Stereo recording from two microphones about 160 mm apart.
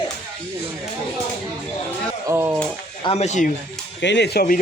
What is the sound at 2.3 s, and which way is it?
Speech, 15° right (ahead or behind).